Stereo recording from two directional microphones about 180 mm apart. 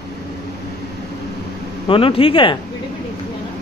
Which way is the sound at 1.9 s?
30° left (ahead or behind).